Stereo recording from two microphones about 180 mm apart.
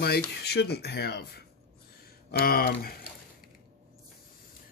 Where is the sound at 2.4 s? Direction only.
55° left (ahead or behind).